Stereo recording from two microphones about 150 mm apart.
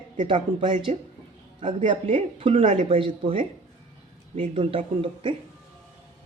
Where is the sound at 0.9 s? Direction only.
50° right (ahead or behind).